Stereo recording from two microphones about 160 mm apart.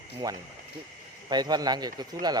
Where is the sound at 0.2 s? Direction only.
25° right (ahead or behind).